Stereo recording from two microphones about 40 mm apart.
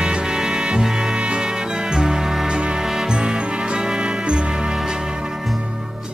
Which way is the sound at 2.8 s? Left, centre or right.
Centre.